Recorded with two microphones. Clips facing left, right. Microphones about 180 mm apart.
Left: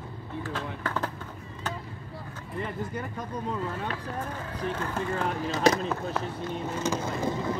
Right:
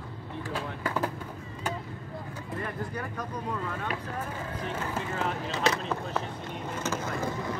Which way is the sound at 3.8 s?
10° right (ahead or behind).